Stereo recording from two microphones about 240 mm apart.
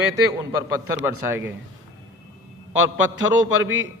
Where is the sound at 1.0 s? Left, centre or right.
Centre.